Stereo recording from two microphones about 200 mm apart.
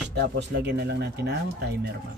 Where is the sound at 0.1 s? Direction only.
60° right (ahead or behind).